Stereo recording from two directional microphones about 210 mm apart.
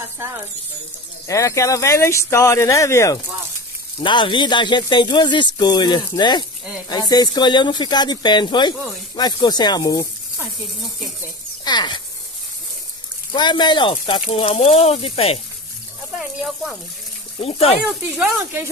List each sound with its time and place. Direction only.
1.2 s speech: 15° left (ahead or behind)
11.6 s speech: 20° left (ahead or behind)
13.3 s speech: 20° left (ahead or behind)
16.2 s speech: 5° right (ahead or behind)
17.4 s speech: 25° left (ahead or behind)
18.1 s speech: 5° right (ahead or behind)